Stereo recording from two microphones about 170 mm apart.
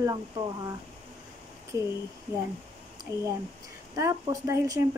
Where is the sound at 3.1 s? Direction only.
20° right (ahead or behind).